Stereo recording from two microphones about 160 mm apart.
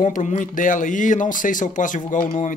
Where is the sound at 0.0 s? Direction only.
50° left (ahead or behind).